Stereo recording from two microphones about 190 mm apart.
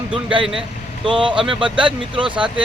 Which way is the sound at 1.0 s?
25° right (ahead or behind).